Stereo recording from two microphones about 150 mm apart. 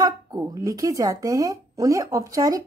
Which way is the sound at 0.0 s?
25° right (ahead or behind).